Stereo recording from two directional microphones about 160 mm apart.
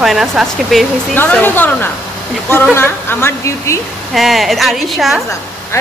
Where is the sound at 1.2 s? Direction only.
10° left (ahead or behind).